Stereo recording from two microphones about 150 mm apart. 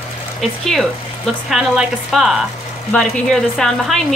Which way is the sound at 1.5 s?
Centre (ahead or behind).